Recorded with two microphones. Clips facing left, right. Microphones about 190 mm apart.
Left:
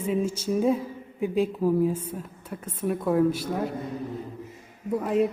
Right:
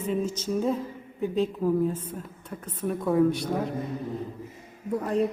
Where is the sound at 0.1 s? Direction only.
10° left (ahead or behind).